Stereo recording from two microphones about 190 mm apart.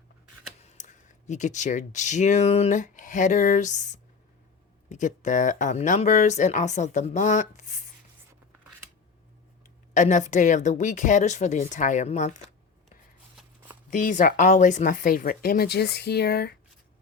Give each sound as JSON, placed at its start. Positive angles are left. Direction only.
{"t": 0.6, "sound": "speech", "side_deg": 40}
{"t": 9.9, "sound": "speech", "side_deg": 40}
{"t": 13.3, "sound": "shuffling cards", "side_deg": -10}
{"t": 13.9, "sound": "speech", "side_deg": 40}